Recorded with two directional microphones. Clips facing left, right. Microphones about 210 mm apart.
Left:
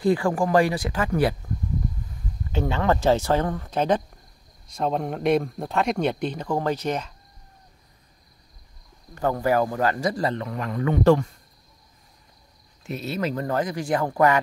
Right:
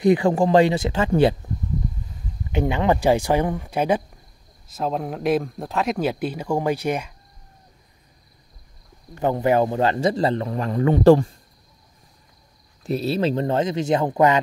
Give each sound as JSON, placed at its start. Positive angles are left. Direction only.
{"t": 0.0, "sound": "a man's voice", "side_deg": -20}
{"t": 2.5, "sound": "speech", "side_deg": -15}
{"t": 9.2, "sound": "a man's voice", "side_deg": -20}
{"t": 12.8, "sound": "a man's voice", "side_deg": -35}